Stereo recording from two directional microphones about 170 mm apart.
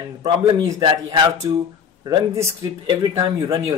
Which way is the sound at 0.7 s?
25° right (ahead or behind).